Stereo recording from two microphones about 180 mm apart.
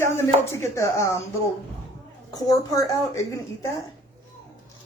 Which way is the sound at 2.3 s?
20° left (ahead or behind).